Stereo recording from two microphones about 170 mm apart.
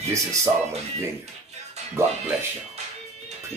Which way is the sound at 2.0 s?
15° right (ahead or behind).